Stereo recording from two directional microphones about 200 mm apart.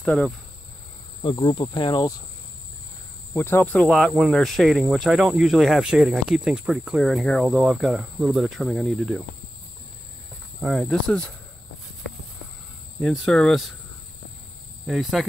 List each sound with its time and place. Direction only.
0.0 s speech: centre (ahead or behind)
1.2 s speech: 25° left (ahead or behind)
3.3 s speech: 10° left (ahead or behind)
10.6 s speech: centre (ahead or behind)
12.9 s speech: centre (ahead or behind)
14.9 s speech: centre (ahead or behind)